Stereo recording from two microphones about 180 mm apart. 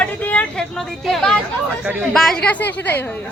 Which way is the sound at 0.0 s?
10° left (ahead or behind).